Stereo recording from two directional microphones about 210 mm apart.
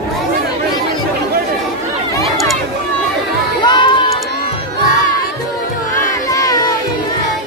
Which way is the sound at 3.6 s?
20° left (ahead or behind).